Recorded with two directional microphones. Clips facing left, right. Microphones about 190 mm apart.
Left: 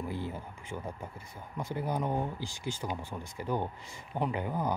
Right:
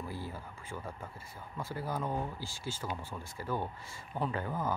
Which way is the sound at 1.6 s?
20° left (ahead or behind).